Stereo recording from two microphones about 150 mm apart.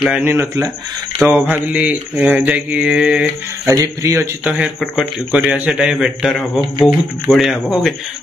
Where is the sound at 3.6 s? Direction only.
20° right (ahead or behind).